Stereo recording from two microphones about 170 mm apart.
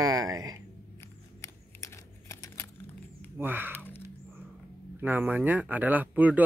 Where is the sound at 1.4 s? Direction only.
15° left (ahead or behind).